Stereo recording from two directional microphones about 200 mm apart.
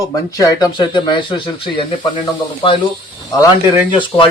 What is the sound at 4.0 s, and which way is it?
Speech, 25° left (ahead or behind).